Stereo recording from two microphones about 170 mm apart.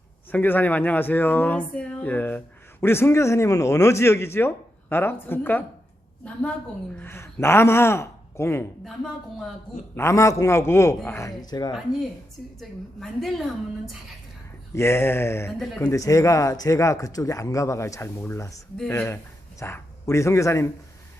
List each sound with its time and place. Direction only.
0.3 s a man's voice: 10° left (ahead or behind)
7.0 s a man's voice: 15° left (ahead or behind)
9.9 s a man's voice: 15° left (ahead or behind)
12.5 s a woman's voice: centre (ahead or behind)
14.7 s a man's voice: 15° left (ahead or behind)
15.5 s a woman's voice: centre (ahead or behind)
15.8 s speech: 20° left (ahead or behind)